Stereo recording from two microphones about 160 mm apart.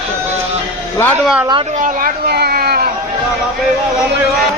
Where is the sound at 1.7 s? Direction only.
55° right (ahead or behind); by 2.9 s 75° right (ahead or behind).